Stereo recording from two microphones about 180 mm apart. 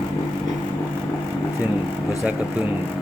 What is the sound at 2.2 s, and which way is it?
Speech, 5° right (ahead or behind).